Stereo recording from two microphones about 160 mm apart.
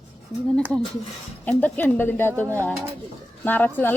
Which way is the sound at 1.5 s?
10° left (ahead or behind).